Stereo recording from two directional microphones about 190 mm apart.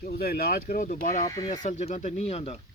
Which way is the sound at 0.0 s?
50° left (ahead or behind).